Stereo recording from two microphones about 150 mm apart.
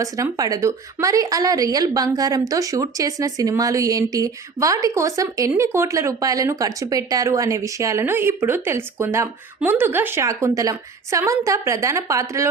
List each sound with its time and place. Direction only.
0.0 s a woman's voice: 25° right (ahead or behind)